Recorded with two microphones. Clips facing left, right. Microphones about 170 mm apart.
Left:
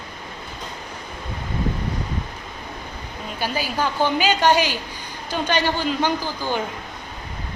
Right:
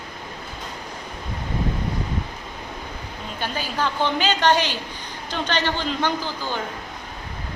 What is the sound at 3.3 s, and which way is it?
A woman's voice, 10° left (ahead or behind).